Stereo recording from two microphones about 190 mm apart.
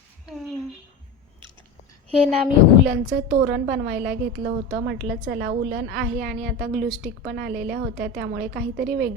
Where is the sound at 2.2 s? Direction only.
Centre (ahead or behind).